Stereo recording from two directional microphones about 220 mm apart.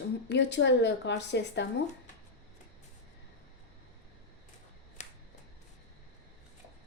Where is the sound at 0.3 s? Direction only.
50° left (ahead or behind).